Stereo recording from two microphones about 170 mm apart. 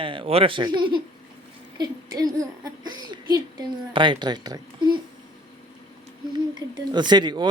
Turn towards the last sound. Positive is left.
turn(degrees=-25)  # may be behind; listen again after turning